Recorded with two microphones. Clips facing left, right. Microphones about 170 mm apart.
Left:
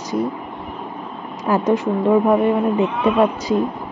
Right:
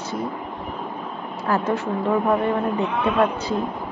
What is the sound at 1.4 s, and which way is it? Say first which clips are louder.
A woman's voice: left 5 dB; 15° left (ahead or behind).